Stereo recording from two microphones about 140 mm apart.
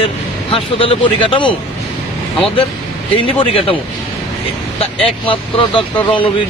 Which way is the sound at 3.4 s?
40° left (ahead or behind).